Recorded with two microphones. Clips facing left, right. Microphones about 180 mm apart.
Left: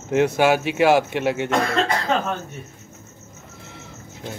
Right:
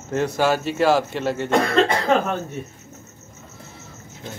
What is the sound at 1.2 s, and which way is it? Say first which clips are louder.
Speech: left 2 dB; 65° left (ahead or behind).